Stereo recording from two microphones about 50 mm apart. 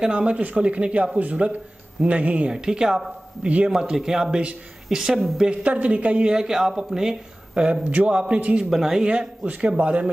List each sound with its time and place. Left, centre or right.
0.0 s speech: right
2.5 s speech: centre
3.4 s speech: right
3.7 s speech: centre
5.4 s speech: right
6.3 s speech: centre
8.6 s speech: centre
9.4 s speech: right